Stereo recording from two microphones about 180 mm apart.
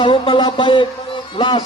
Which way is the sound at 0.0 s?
30° left (ahead or behind).